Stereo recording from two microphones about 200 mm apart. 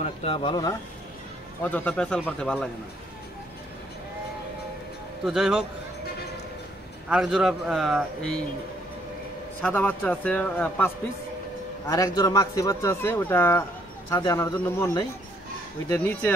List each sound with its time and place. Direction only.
0.0 s speech: 30° left (ahead or behind)
1.6 s speech: 10° left (ahead or behind)
5.2 s speech: centre (ahead or behind)
7.1 s speech: centre (ahead or behind)
9.6 s speech: 10° left (ahead or behind)
11.9 s speech: 20° left (ahead or behind)